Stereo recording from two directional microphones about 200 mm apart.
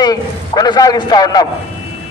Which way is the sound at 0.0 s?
20° left (ahead or behind).